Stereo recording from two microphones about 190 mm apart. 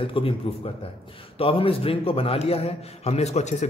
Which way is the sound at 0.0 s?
30° left (ahead or behind).